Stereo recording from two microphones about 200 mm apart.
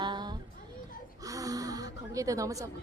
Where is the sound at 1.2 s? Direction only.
15° right (ahead or behind).